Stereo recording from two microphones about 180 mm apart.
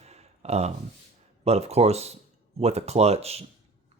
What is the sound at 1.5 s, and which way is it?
Speech, 35° right (ahead or behind).